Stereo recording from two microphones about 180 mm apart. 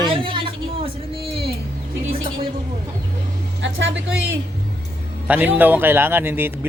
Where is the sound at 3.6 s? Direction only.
90° right.